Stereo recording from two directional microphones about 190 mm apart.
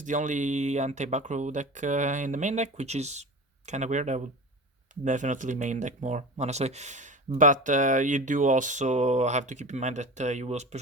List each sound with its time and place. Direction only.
0.0 s speech: 40° right (ahead or behind)